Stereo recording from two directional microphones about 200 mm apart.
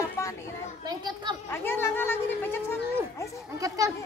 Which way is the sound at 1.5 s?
10° left (ahead or behind).